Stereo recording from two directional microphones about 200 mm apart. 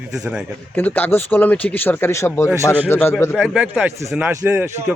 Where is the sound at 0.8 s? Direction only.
10° left (ahead or behind).